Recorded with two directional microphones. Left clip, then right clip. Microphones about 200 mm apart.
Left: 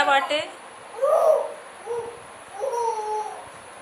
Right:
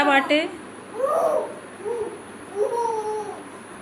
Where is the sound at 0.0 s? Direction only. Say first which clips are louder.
Right 2 dB; centre (ahead or behind).